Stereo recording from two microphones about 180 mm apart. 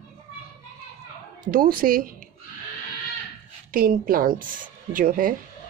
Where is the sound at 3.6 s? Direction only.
55° right (ahead or behind).